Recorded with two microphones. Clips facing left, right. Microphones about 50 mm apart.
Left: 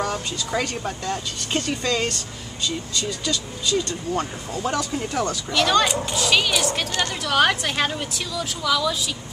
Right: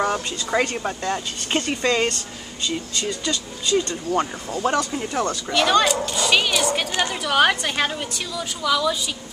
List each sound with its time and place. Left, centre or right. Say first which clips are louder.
0.0 s a woman's voice: right 3 dB; right
3.3 s a woman's voice: right 1 dB; centre
4.7 s a woman's voice: right 2 dB; centre